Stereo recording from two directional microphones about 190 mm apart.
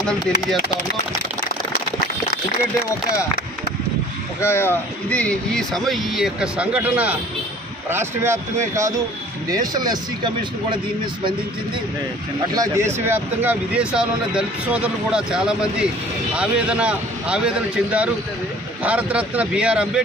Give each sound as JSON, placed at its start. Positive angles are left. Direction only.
{"t": 0.0, "sound": "speech", "side_deg": 0}
{"t": 4.4, "sound": "speech", "side_deg": 15}
{"t": 12.5, "sound": "speech", "side_deg": -15}